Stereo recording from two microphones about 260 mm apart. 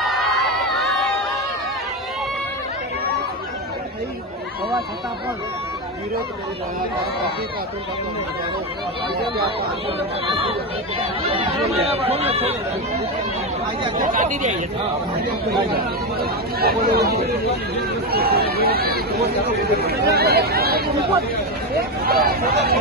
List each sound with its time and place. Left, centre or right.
0.0 s crowd: centre
11.0 s speech: right
13.9 s speech: right